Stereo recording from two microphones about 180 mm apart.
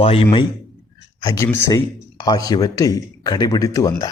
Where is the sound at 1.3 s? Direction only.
15° left (ahead or behind).